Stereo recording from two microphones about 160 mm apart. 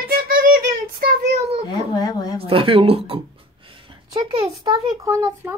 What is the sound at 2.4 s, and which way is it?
Speech, 35° right (ahead or behind).